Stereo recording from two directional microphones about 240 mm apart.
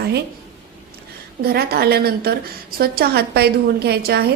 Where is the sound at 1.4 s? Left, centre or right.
Right.